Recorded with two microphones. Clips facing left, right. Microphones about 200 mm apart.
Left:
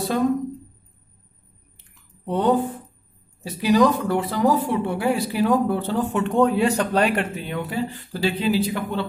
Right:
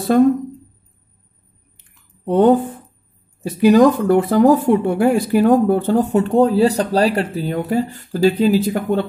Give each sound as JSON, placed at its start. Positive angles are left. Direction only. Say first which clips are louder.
{"t": 0.1, "sound": "a woman's voice", "louder": "right 9 dB", "side_deg": -50}
{"t": 2.2, "sound": "speech", "louder": "right 8 dB", "side_deg": -50}
{"t": 3.6, "sound": "a woman's voice", "louder": "right 7 dB", "side_deg": -50}